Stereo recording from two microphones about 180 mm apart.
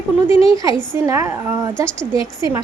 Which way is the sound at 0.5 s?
20° right (ahead or behind).